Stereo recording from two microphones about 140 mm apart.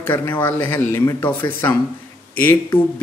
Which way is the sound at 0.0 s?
15° left (ahead or behind).